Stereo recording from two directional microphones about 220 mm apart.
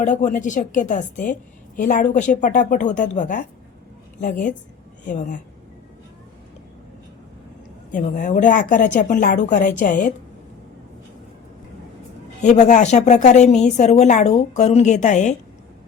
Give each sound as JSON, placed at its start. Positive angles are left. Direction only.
{"t": 0.0, "sound": "a woman's voice", "side_deg": 35}
{"t": 7.9, "sound": "a woman's voice", "side_deg": 35}
{"t": 12.4, "sound": "a woman's voice", "side_deg": 30}